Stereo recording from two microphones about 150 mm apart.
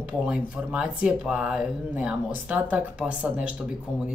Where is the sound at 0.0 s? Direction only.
10° right (ahead or behind).